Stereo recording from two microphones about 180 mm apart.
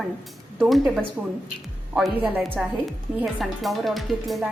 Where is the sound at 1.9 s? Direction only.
5° right (ahead or behind).